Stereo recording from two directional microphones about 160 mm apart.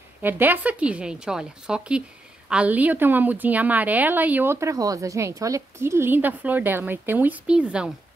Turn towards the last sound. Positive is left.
turn(degrees=-5)  # may be behind; listen again after turning